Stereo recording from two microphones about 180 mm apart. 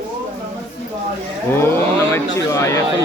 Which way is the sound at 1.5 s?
15° left (ahead or behind).